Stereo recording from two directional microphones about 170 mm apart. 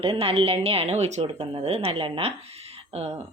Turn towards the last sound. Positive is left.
turn(degrees=-35)  # may be behind; listen again after turning